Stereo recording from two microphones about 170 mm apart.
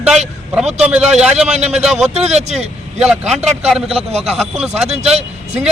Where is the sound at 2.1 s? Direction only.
40° right (ahead or behind).